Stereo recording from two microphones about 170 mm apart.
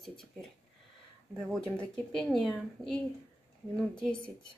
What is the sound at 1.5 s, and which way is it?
Speech, 5° left (ahead or behind).